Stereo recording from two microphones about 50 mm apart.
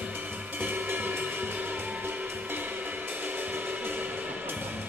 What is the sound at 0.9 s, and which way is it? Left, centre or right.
Music, right.